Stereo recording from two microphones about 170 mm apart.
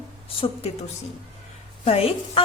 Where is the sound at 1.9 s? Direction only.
35° left (ahead or behind).